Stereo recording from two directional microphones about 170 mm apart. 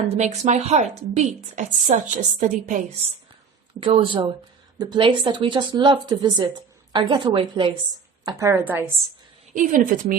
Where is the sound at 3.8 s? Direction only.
30° right (ahead or behind).